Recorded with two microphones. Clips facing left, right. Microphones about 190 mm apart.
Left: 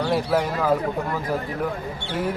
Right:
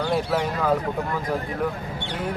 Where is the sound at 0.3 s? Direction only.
5° left (ahead or behind).